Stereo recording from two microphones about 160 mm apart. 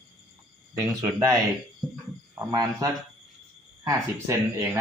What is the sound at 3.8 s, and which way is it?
Speech, 15° right (ahead or behind).